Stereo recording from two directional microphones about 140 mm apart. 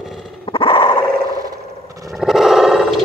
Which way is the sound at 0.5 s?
40° left (ahead or behind).